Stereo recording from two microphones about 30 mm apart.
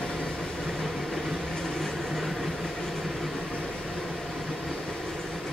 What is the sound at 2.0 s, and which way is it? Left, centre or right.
Vehicle, centre.